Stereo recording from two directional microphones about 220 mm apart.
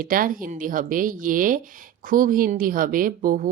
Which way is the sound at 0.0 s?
40° right (ahead or behind).